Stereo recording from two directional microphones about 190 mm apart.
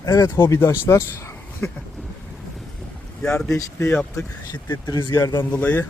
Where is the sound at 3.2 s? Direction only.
5° left (ahead or behind).